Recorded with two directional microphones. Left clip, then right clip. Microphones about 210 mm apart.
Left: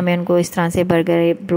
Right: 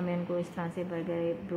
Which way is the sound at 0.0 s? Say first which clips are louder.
Left 16 dB; 50° left (ahead or behind).